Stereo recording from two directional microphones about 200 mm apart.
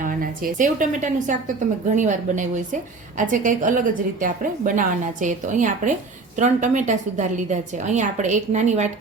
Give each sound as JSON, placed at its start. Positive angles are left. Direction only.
{"t": 0.0, "sound": "a woman's voice", "side_deg": -45}